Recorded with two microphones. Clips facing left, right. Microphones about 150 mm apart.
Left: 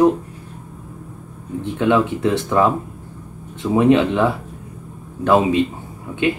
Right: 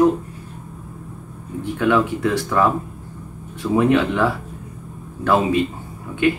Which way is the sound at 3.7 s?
20° left (ahead or behind).